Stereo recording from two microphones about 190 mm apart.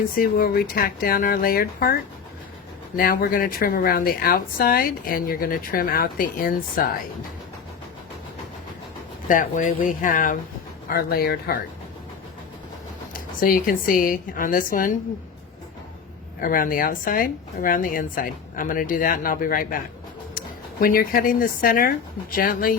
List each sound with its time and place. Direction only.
0.2 s speech: 50° left (ahead or behind)
9.2 s speech: 45° left (ahead or behind)
13.4 s speech: 50° left (ahead or behind)
16.4 s speech: 50° left (ahead or behind)
20.8 s speech: 50° left (ahead or behind)